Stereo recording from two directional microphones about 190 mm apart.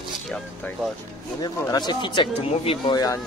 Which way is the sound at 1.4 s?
20° left (ahead or behind).